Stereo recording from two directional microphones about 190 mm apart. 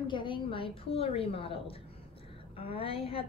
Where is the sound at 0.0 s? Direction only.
25° left (ahead or behind).